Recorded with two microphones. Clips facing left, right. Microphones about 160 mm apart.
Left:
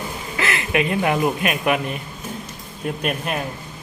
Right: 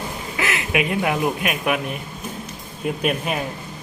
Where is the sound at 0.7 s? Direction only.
5° right (ahead or behind).